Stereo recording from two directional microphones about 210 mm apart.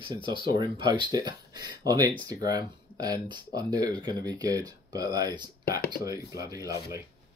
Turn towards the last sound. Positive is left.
turn(degrees=-15)  # may be behind; listen again after turning